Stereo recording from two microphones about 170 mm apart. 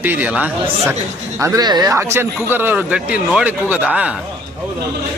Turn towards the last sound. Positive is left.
turn(degrees=-5)  # may be behind; listen again after turning